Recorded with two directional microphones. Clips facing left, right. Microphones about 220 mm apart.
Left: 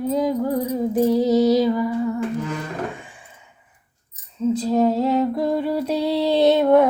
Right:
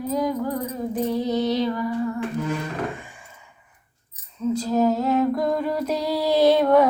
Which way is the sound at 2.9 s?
Centre (ahead or behind).